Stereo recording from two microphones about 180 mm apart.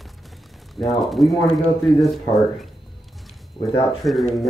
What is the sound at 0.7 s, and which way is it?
Speech, centre (ahead or behind).